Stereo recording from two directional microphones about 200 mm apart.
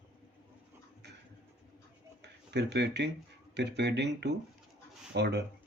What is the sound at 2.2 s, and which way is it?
Speech, 55° right (ahead or behind).